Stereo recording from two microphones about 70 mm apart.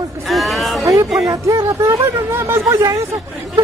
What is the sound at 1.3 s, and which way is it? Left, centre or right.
Speech, right.